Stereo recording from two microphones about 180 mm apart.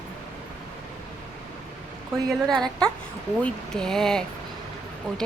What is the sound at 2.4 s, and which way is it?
A woman's voice, centre (ahead or behind).